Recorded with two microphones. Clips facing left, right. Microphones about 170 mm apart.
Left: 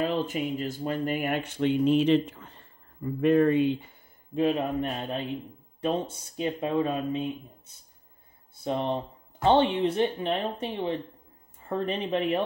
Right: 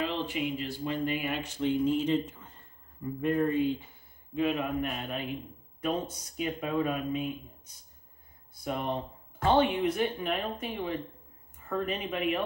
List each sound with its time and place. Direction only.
0.0 s speech: 45° left (ahead or behind); by 3.7 s 75° left (ahead or behind)
4.4 s a man's voice: 35° left (ahead or behind)